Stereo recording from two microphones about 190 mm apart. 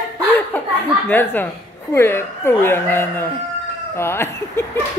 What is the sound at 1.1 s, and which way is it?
Speech, 10° left (ahead or behind).